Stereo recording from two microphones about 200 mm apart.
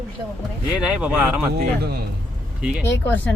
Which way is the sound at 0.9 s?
5° right (ahead or behind).